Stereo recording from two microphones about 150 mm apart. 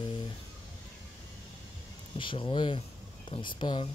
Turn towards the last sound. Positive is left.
turn(degrees=35)  # may be behind; listen again after turning